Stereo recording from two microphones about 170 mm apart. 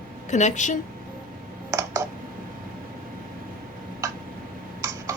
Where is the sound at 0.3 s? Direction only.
45° left (ahead or behind).